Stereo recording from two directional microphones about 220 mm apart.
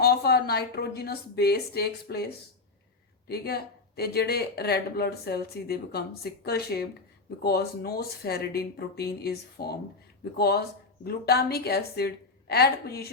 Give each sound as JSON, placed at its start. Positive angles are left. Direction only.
{"t": 0.0, "sound": "speech", "side_deg": 45}